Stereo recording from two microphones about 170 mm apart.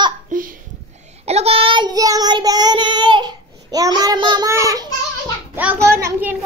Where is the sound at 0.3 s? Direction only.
50° right (ahead or behind).